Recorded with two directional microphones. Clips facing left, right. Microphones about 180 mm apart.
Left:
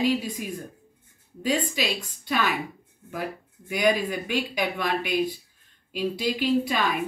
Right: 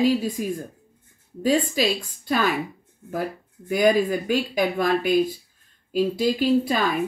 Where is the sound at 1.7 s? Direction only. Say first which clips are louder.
Right 6 dB; 40° right (ahead or behind).